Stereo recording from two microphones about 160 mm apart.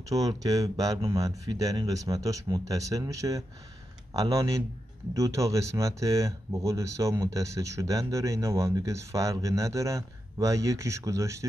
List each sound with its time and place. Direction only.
0.1 s speech: 20° right (ahead or behind)